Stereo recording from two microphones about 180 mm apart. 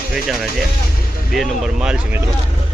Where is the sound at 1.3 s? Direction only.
Centre (ahead or behind).